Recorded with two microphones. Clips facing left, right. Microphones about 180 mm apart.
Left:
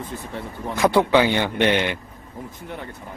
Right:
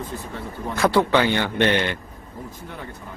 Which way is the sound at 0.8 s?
15° left (ahead or behind).